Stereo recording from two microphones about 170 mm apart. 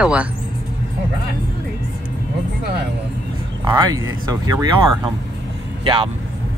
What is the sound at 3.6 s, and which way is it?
A man's voice, 25° right (ahead or behind).